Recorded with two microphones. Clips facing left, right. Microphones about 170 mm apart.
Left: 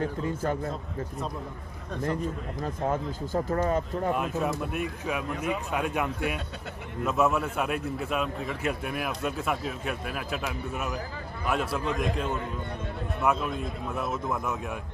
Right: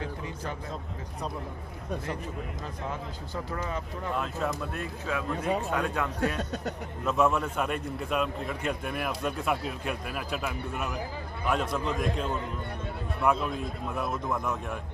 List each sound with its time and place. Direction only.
0.0 s speech: 45° left (ahead or behind)
2.8 s speech: 45° left (ahead or behind)
4.1 s speech: 20° left (ahead or behind)
5.4 s a man's voice: 40° right (ahead or behind)
5.7 s speech: 15° left (ahead or behind)
7.0 s a man's voice: 5° left (ahead or behind)
13.2 s a man's voice: centre (ahead or behind)